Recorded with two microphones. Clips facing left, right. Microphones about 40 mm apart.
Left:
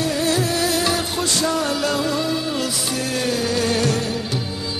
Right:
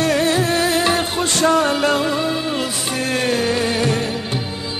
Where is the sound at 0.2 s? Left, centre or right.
Right.